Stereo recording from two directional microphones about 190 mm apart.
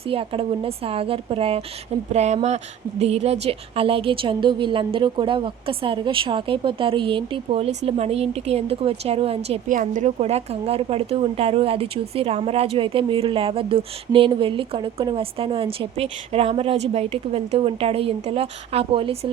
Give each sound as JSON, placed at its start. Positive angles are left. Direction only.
{"t": 0.1, "sound": "a woman's voice", "side_deg": -30}